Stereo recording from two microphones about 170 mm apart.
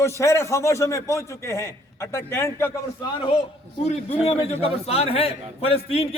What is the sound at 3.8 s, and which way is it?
A man's voice, 35° left (ahead or behind).